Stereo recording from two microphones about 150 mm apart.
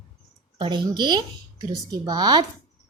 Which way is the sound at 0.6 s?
30° right (ahead or behind).